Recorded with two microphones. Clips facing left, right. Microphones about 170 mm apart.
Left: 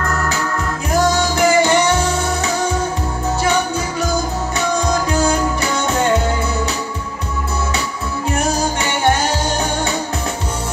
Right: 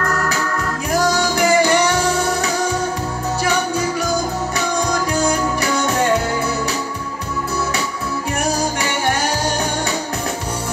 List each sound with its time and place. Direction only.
0.9 s music: 25° left (ahead or behind)